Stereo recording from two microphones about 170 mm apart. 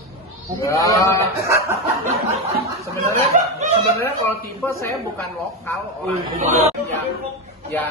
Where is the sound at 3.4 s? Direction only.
50° right (ahead or behind).